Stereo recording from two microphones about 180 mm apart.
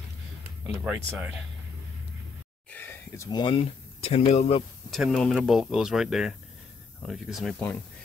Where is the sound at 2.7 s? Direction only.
10° left (ahead or behind); by 4.6 s 35° left (ahead or behind).